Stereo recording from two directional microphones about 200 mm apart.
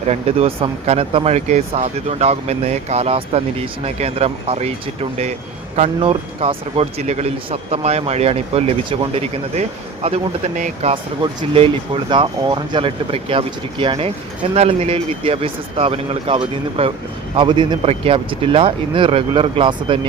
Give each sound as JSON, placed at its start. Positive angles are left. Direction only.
{"t": 0.1, "sound": "speech", "side_deg": -30}
{"t": 5.7, "sound": "speech", "side_deg": -30}